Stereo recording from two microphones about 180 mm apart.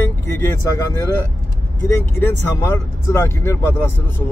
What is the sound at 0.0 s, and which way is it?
Speech, 15° left (ahead or behind).